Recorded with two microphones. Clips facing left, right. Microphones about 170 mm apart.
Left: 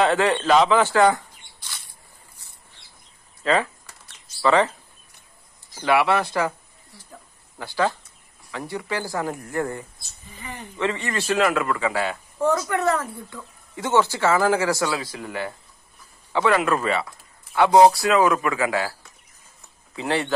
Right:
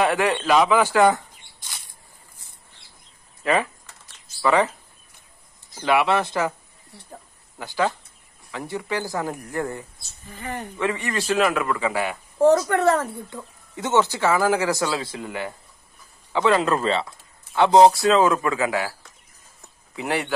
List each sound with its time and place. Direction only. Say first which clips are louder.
0.0 s a man's voice: left 1 dB; 15° right (ahead or behind)
3.4 s a man's voice: even; 15° right (ahead or behind)
5.8 s speech: even; 20° right (ahead or behind)
7.5 s a man's voice: even; 15° right (ahead or behind)
10.3 s speech: right 6 dB; 45° right (ahead or behind)
10.8 s a man's voice: left 1 dB; 15° right (ahead or behind)
12.4 s speech: right 5 dB; 35° right (ahead or behind); by 18.9 s 15° right (ahead or behind)
20.0 s a man's voice: left 1 dB; 15° right (ahead or behind)